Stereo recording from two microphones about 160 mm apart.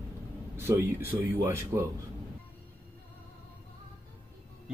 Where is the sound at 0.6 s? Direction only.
15° right (ahead or behind).